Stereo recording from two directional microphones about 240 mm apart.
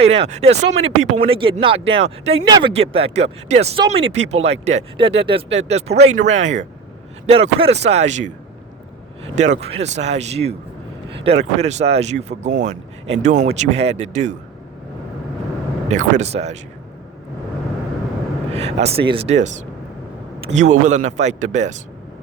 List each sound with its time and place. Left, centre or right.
0.0 s speech: right
15.9 s speech: right
18.5 s speech: right